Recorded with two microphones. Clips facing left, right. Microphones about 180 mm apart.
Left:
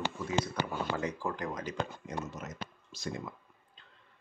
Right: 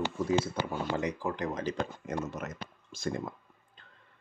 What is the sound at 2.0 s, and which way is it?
Speech, 55° right (ahead or behind).